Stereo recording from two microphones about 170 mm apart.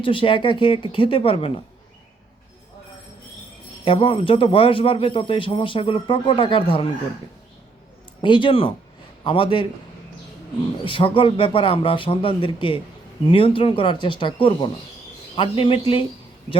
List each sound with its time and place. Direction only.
0.0 s speech: 30° left (ahead or behind)
3.8 s speech: 30° left (ahead or behind)
8.2 s speech: 30° left (ahead or behind)
10.8 s speech: 30° left (ahead or behind)